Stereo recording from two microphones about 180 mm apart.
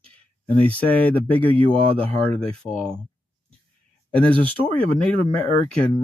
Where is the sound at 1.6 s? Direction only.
30° right (ahead or behind).